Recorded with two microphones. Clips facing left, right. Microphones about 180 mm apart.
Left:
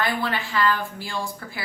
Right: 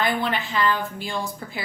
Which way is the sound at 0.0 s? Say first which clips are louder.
Right 2 dB; 20° right (ahead or behind).